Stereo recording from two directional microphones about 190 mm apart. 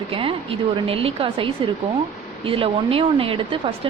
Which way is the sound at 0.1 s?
30° right (ahead or behind).